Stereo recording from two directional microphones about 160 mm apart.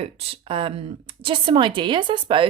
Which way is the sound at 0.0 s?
40° right (ahead or behind).